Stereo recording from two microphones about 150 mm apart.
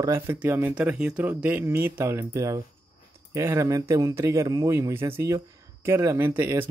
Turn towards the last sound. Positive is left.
turn(degrees=-15)  # may be behind; listen again after turning